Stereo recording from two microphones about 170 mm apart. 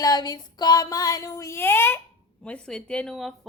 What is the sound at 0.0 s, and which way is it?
Child singing, 25° left (ahead or behind).